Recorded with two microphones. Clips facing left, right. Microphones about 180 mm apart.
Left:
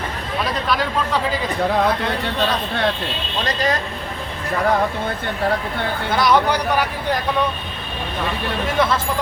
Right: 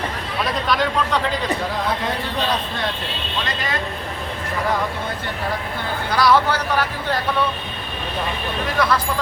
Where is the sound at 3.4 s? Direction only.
40° left (ahead or behind).